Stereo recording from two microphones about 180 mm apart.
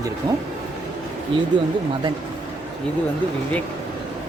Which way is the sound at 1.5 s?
25° right (ahead or behind).